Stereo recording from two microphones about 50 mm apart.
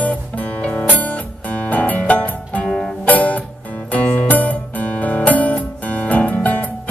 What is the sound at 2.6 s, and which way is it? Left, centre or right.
Music, centre.